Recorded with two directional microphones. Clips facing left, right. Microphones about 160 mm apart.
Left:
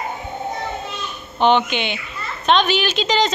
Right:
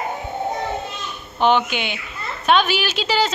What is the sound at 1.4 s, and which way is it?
A woman's voice, 5° right (ahead or behind).